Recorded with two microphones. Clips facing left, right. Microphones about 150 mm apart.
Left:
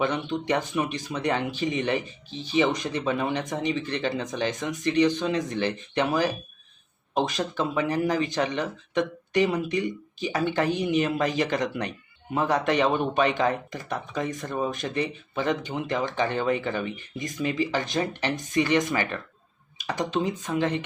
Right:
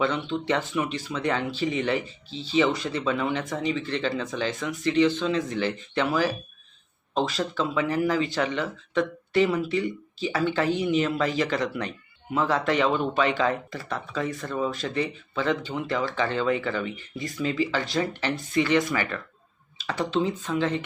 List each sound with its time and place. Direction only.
0.0 s speech: 15° left (ahead or behind)